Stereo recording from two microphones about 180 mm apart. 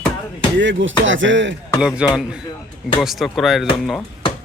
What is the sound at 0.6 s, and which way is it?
Speech, 90° right.